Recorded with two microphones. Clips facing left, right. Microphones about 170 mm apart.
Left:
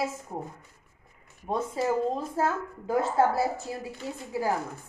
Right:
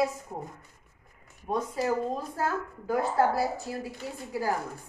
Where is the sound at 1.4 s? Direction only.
25° left (ahead or behind).